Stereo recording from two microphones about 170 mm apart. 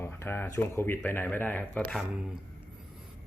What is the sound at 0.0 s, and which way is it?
Speech, 15° left (ahead or behind).